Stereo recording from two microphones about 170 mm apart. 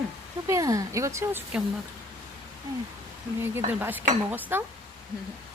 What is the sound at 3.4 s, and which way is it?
Speech, 15° right (ahead or behind).